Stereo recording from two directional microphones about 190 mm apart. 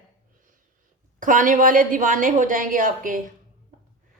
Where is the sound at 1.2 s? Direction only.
45° right (ahead or behind).